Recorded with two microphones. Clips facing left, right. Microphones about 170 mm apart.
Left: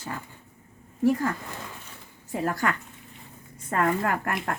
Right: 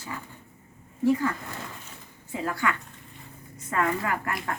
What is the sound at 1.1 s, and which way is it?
Speech, 45° left (ahead or behind).